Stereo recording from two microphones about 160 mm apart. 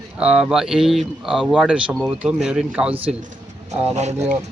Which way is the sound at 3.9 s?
45° right (ahead or behind).